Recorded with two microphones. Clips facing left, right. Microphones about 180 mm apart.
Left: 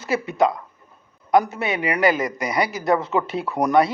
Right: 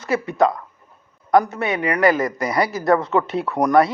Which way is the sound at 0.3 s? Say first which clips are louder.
Right 1 dB; 20° left (ahead or behind).